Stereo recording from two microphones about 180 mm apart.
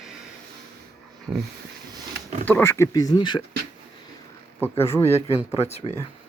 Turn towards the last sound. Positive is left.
turn(degrees=35)  # may be behind; listen again after turning